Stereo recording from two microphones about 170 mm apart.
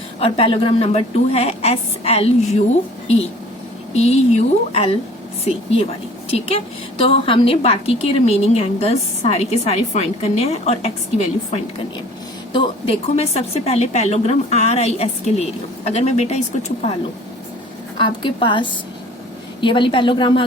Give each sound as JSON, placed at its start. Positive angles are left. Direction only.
{"t": 0.2, "sound": "a woman's voice", "side_deg": 35}
{"t": 3.9, "sound": "a woman's voice", "side_deg": 40}
{"t": 12.5, "sound": "a woman's voice", "side_deg": 30}
{"t": 17.9, "sound": "a woman's voice", "side_deg": 30}